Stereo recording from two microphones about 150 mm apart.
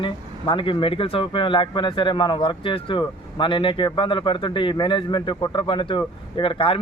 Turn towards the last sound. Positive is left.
turn(degrees=35)  # may be behind; listen again after turning